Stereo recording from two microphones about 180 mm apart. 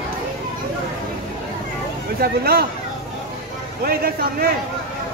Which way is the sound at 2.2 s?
60° right (ahead or behind).